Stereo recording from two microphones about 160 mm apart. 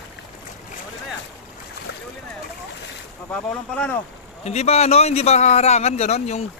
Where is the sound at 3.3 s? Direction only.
5° left (ahead or behind).